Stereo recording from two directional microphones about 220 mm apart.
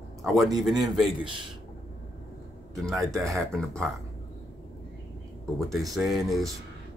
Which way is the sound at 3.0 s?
Centre (ahead or behind).